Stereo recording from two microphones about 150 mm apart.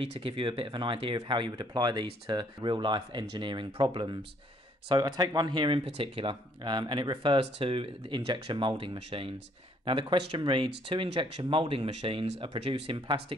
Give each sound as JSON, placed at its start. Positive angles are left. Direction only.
{"t": 0.0, "sound": "speech", "side_deg": -35}